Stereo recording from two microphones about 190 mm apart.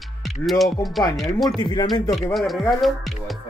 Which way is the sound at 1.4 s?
20° left (ahead or behind).